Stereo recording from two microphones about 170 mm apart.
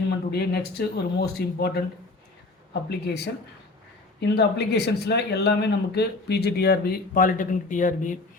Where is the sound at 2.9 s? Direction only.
75° left (ahead or behind).